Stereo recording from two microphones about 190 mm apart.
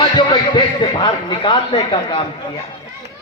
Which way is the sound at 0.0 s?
25° left (ahead or behind).